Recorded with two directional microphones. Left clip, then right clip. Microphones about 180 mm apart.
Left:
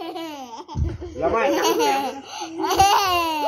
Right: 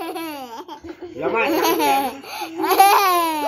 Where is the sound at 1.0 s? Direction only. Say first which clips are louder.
Right 1 dB; 30° left (ahead or behind).